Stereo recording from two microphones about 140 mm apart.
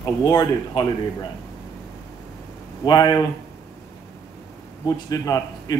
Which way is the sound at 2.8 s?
30° left (ahead or behind).